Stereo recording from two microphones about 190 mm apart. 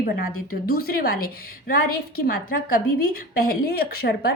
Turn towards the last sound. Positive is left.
turn(degrees=55)  # may be behind; listen again after turning